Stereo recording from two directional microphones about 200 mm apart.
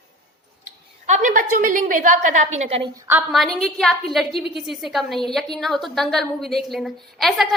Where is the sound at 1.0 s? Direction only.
40° right (ahead or behind).